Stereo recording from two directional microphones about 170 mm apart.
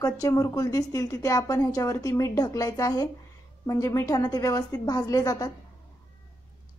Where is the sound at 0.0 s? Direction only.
20° left (ahead or behind).